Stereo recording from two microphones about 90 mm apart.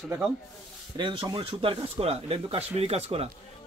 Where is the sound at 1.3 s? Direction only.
80° right.